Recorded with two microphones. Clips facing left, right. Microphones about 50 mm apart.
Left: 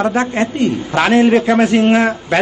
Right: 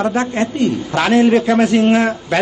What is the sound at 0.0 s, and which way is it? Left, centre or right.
A man's voice, left.